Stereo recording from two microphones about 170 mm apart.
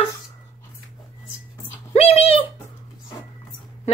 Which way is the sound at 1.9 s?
35° left (ahead or behind).